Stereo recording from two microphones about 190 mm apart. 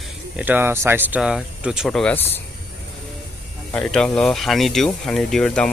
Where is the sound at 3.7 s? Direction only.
5° left (ahead or behind).